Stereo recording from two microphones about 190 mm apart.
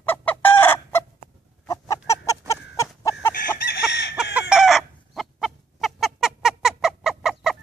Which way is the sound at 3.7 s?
65° left (ahead or behind).